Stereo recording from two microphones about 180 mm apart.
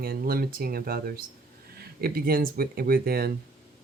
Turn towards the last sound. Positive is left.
turn(degrees=-60)  # may be behind; listen again after turning